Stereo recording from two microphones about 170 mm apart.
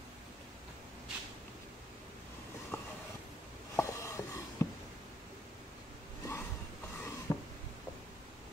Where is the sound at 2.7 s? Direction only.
15° left (ahead or behind).